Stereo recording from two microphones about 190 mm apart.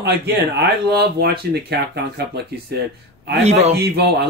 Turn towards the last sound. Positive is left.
turn(degrees=-60)  # may be behind; listen again after turning